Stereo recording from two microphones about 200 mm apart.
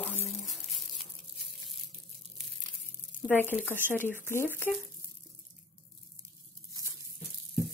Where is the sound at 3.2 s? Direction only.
10° left (ahead or behind).